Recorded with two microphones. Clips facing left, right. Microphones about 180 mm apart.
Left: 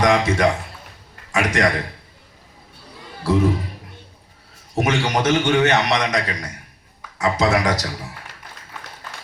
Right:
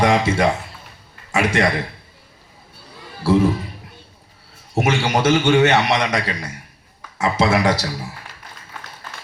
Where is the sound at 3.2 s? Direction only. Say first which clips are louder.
Right 3 dB; 25° right (ahead or behind).